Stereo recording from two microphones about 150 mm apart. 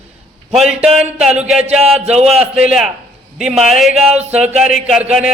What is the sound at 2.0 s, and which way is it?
Speech, 45° right (ahead or behind).